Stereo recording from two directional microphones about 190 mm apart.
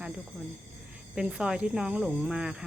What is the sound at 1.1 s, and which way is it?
Speech, 5° right (ahead or behind).